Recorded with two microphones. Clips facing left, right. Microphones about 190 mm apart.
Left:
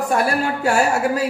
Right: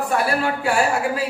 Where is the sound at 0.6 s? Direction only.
45° left (ahead or behind).